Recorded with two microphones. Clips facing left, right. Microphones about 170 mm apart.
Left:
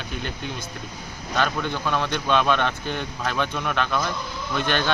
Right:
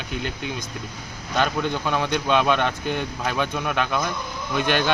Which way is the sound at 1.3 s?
15° right (ahead or behind).